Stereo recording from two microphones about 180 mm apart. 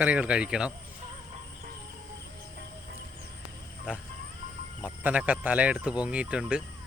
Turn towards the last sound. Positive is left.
turn(degrees=-5)  # may be behind; listen again after turning